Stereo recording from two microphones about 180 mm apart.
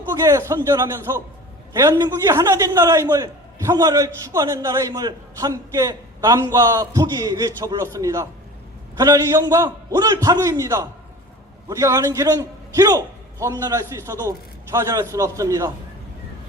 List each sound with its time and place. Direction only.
0.3 s a man's voice: 15° right (ahead or behind)